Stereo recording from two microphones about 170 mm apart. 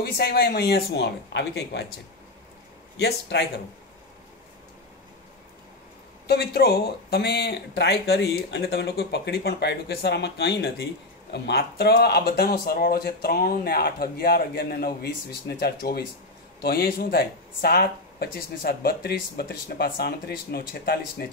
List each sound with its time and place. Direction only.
0.0 s speech: 70° left (ahead or behind); by 1.9 s 85° left
3.0 s speech: 75° left (ahead or behind)
6.2 s speech: 70° left (ahead or behind)